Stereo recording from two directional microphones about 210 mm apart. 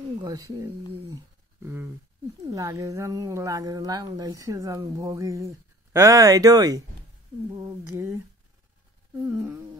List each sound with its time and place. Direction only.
0.2 s a woman's voice: 15° right (ahead or behind)
9.2 s a woman's voice: 10° right (ahead or behind)